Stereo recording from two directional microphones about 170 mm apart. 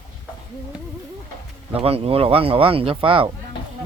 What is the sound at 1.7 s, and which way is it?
Speech, 35° right (ahead or behind).